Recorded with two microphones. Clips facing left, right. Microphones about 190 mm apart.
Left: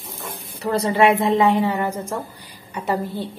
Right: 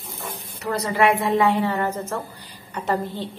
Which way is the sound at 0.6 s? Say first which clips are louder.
Left 3 dB; 30° left (ahead or behind).